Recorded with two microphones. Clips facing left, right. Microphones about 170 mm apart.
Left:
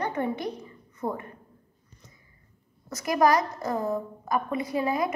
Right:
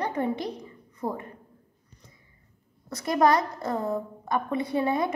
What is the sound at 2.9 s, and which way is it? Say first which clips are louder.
A woman's voice: even; 25° right (ahead or behind).